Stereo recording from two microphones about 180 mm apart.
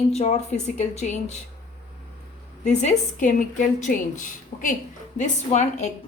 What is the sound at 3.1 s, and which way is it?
A woman's voice, 45° left (ahead or behind).